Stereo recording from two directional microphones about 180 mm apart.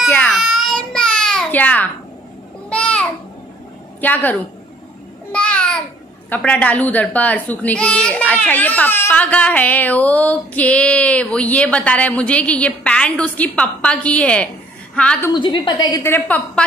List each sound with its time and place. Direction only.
0.1 s a sound: 10° left (ahead or behind)
0.4 s baby cry: centre (ahead or behind)
2.7 s a sound: 5° left (ahead or behind)
4.0 s a child's voice: 10° left (ahead or behind)
5.3 s babbling: 5° left (ahead or behind)
6.3 s a child's voice: 5° left (ahead or behind)
15.3 s a woman's voice: 25° left (ahead or behind); by 16.6 s 10° left (ahead or behind)